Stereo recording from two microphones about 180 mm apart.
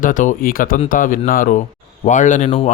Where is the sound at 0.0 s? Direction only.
45° left (ahead or behind).